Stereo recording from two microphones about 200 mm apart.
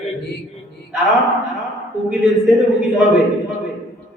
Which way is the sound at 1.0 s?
Centre (ahead or behind).